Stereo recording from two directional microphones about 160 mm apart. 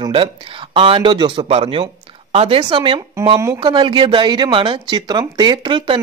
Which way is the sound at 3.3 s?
20° right (ahead or behind).